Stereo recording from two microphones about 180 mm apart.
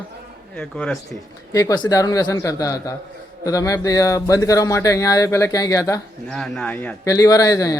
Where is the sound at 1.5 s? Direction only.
20° left (ahead or behind).